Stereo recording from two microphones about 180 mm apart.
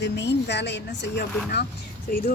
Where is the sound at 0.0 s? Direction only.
75° left (ahead or behind).